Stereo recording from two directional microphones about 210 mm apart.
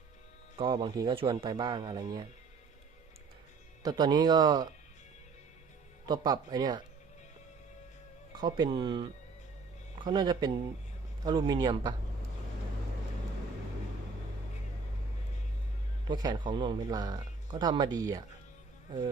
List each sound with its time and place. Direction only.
0.6 s speech: 20° right (ahead or behind)
3.8 s speech: 20° right (ahead or behind)
6.1 s speech: 20° right (ahead or behind)
8.4 s speech: 20° right (ahead or behind)
16.0 s speech: 20° right (ahead or behind)